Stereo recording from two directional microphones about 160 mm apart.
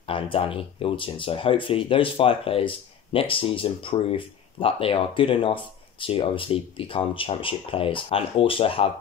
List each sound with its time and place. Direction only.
0.0 s speech: 35° left (ahead or behind)